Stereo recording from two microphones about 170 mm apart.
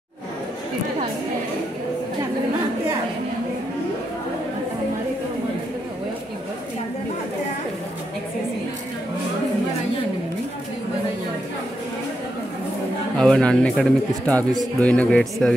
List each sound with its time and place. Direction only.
13.2 s speech: 5° left (ahead or behind)